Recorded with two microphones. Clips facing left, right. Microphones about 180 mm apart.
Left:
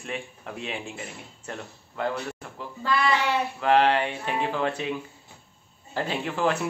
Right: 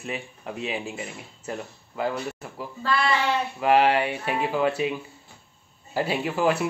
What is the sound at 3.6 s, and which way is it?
Speech, 10° right (ahead or behind).